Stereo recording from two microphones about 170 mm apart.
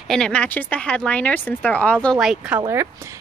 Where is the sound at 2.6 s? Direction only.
15° right (ahead or behind).